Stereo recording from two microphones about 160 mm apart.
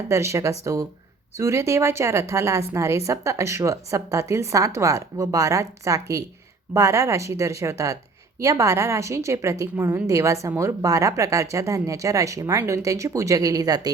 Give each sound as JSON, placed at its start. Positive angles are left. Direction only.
{"t": 0.1, "sound": "a woman's voice", "side_deg": -15}